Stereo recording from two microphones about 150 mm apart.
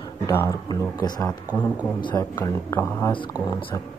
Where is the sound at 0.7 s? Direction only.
25° left (ahead or behind).